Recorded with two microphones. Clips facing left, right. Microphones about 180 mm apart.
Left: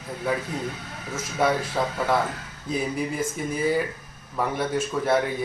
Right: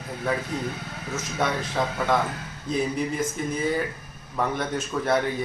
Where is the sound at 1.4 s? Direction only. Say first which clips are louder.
Left 3 dB; 5° left (ahead or behind).